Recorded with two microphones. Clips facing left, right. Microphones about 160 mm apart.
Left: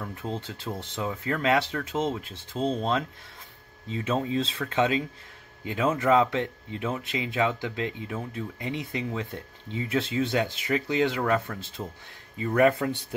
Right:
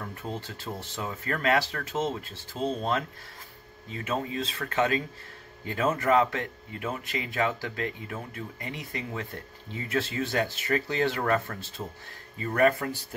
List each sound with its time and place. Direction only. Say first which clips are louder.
0.1 s speech: left 2 dB; 20° left (ahead or behind); by 11.9 s 5° left (ahead or behind)
12.4 s speech: left 2 dB; 15° left (ahead or behind)